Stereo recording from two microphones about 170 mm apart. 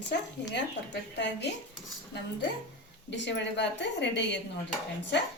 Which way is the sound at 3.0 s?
90° left.